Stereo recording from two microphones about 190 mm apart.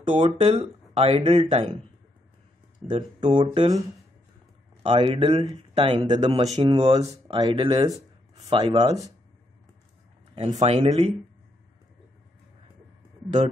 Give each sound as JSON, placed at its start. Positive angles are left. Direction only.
{"t": 0.0, "sound": "speech", "side_deg": -25}
{"t": 2.8, "sound": "speech", "side_deg": 5}
{"t": 3.2, "sound": "speech", "side_deg": -25}
{"t": 4.8, "sound": "speech", "side_deg": -30}
{"t": 10.6, "sound": "speech", "side_deg": -35}